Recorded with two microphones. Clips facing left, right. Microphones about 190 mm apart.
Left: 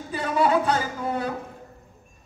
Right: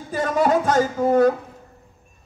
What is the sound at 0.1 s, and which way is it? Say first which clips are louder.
A man's voice: right 3 dB; 45° right (ahead or behind).